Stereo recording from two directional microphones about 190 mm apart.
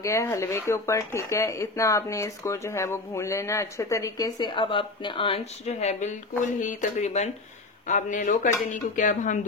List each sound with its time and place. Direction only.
0.0 s speech: 15° left (ahead or behind); by 9.4 s 40° left (ahead or behind)